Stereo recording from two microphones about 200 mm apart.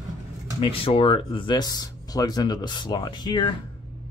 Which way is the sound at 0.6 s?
25° left (ahead or behind).